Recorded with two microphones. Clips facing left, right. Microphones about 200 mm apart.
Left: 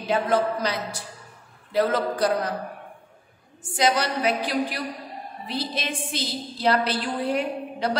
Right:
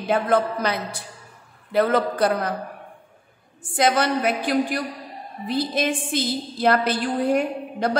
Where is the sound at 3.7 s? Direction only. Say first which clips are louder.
Right 3 dB; 55° right (ahead or behind).